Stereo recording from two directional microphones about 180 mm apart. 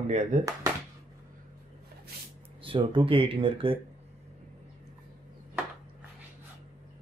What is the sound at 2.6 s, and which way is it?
Speech, 30° right (ahead or behind).